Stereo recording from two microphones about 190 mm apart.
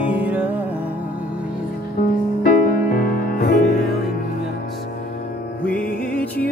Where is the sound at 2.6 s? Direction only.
50° left (ahead or behind).